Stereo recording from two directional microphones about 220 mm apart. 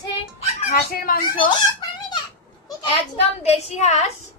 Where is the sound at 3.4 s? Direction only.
30° left (ahead or behind).